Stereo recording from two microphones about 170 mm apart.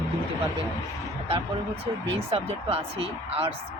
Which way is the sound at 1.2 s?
35° right (ahead or behind).